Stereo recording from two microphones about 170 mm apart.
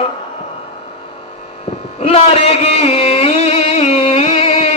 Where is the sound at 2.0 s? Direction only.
35° left (ahead or behind).